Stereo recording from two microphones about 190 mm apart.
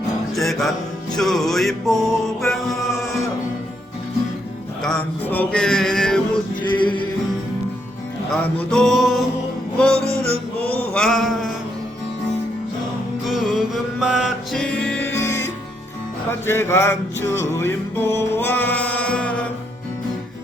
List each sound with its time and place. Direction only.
0.3 s music: centre (ahead or behind)
4.8 s male singing: 5° left (ahead or behind)
6.7 s music: 25° left (ahead or behind)
8.4 s music: 10° left (ahead or behind)
10.9 s a sound: centre (ahead or behind)
13.2 s music: centre (ahead or behind); by 15.4 s 15° left (ahead or behind)
16.5 s music: 15° left (ahead or behind)